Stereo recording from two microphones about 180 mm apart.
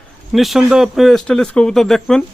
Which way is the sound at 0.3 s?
Centre (ahead or behind).